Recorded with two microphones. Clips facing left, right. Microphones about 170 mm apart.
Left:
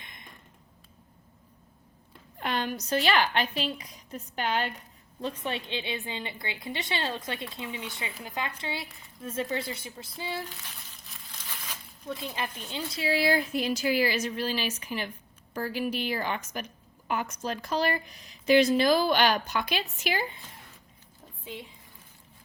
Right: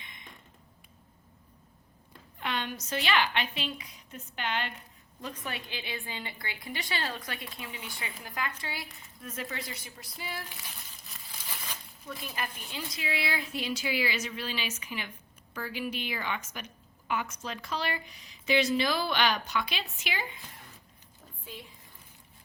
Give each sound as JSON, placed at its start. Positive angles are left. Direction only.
{"t": 2.4, "sound": "a woman's voice", "side_deg": 40}
{"t": 5.2, "sound": "a woman's voice", "side_deg": 25}
{"t": 11.0, "sound": "a sound", "side_deg": 0}
{"t": 12.0, "sound": "a woman's voice", "side_deg": 25}